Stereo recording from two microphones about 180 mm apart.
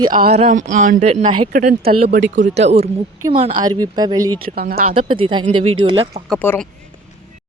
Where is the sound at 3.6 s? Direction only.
20° right (ahead or behind).